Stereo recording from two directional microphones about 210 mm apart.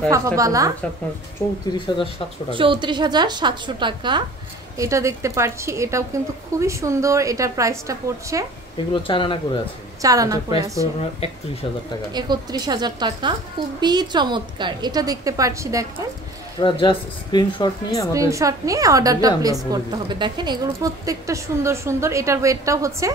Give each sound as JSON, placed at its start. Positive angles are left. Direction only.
{"t": 0.1, "sound": "a woman's voice", "side_deg": -15}
{"t": 1.9, "sound": "speech", "side_deg": 20}
{"t": 2.5, "sound": "a woman's voice", "side_deg": -25}
{"t": 8.9, "sound": "speech", "side_deg": 25}
{"t": 10.0, "sound": "a woman's voice", "side_deg": -15}
{"t": 12.1, "sound": "a woman's voice", "side_deg": -20}
{"t": 16.5, "sound": "speech", "side_deg": 25}
{"t": 18.1, "sound": "a woman's voice", "side_deg": -15}